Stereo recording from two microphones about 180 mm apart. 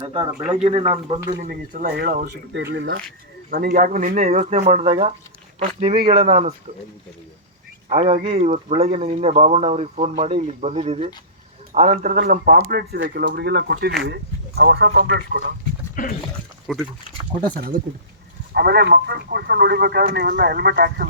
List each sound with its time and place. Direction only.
0.0 s speech: 30° right (ahead or behind)
1.4 s speech: 50° right (ahead or behind)
2.2 s speech: 70° right (ahead or behind)
3.5 s speech: 50° right (ahead or behind); by 6.5 s 35° right (ahead or behind)
7.9 s speech: 35° right (ahead or behind)
11.7 s speech: 45° right (ahead or behind); by 15.5 s 65° right (ahead or behind)
16.0 s speech: 45° left (ahead or behind)
16.7 s speech: centre (ahead or behind)
18.5 s speech: 65° right (ahead or behind)